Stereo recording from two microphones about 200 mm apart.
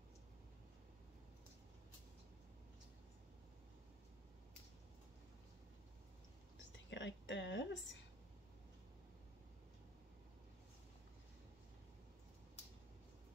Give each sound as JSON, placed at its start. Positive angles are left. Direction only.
{"t": 6.9, "sound": "speech", "side_deg": 65}